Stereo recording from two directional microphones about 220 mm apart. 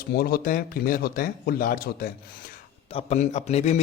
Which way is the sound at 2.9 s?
30° left (ahead or behind).